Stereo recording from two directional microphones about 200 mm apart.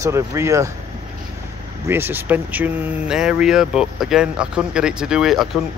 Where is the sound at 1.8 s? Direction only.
10° right (ahead or behind).